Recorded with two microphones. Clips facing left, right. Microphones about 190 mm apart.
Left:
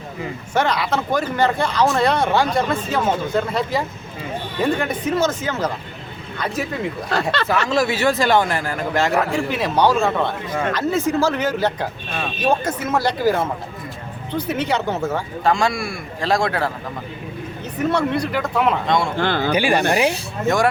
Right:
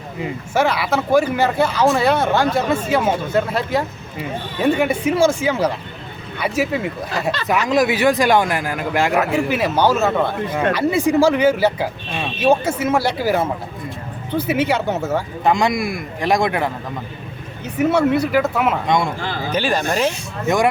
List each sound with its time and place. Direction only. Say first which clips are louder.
0.5 s a man's voice: right 2 dB; 5° right (ahead or behind)
7.1 s speech: left 3 dB; 65° left (ahead or behind)
7.4 s a man's voice: right 5 dB; 15° right (ahead or behind)
15.4 s a man's voice: right 2 dB; 20° right (ahead or behind)
17.7 s speech: right 4 dB; 5° right (ahead or behind)
18.9 s a man's voice: right 1 dB; 15° right (ahead or behind)
19.1 s speech: left 5 dB; 70° left (ahead or behind)
19.5 s speech: even; 10° left (ahead or behind)